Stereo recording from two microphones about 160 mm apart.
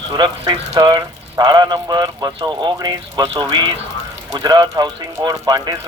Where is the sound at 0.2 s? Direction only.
25° right (ahead or behind).